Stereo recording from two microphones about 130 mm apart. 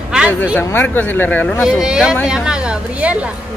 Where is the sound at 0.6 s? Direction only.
15° left (ahead or behind).